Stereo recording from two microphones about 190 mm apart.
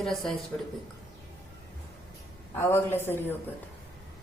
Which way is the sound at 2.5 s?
10° left (ahead or behind).